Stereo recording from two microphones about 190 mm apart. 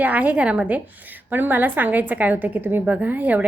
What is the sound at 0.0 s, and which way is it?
A woman's voice, 10° right (ahead or behind).